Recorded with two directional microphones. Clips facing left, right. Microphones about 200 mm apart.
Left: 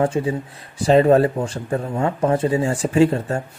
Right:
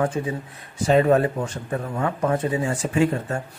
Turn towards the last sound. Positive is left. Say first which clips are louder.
# left 5 dB
turn(degrees=30)  # may be behind; listen again after turning